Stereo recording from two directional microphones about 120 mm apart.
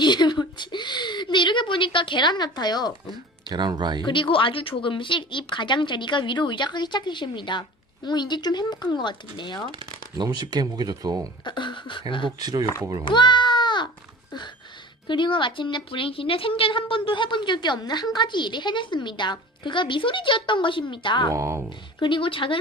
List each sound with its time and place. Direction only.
0.0 s speech: 40° left (ahead or behind)
3.5 s speech: 35° right (ahead or behind)
4.0 s speech: 45° left (ahead or behind)
10.2 s speech: 35° right (ahead or behind)
11.4 s a woman's voice: 40° left (ahead or behind)
12.4 s speech: 35° right (ahead or behind)
13.1 s a sound: 40° left (ahead or behind)
15.0 s a woman's voice: 40° left (ahead or behind)
21.3 s speech: 25° right (ahead or behind)
22.0 s a woman's voice: 45° left (ahead or behind)